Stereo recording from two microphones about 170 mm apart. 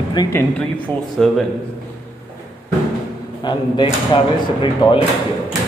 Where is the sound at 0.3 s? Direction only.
10° left (ahead or behind).